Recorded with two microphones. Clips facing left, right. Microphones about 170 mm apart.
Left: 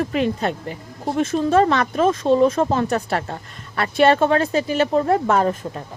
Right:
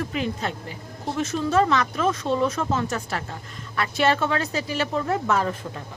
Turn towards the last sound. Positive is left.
turn(degrees=30)  # may be behind; listen again after turning